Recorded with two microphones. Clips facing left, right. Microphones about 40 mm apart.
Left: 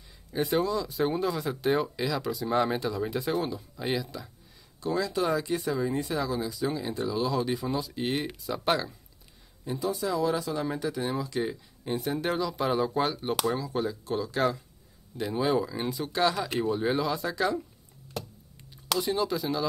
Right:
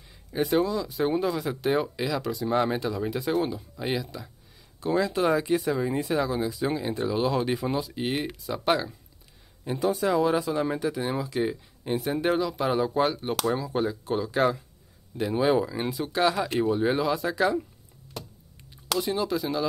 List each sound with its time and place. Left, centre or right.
0.3 s speech: centre
4.8 s speech: right
5.8 s speech: centre
7.8 s speech: centre
9.7 s speech: right
10.5 s speech: right; by 13.4 s centre
13.6 s speech: centre
18.9 s speech: centre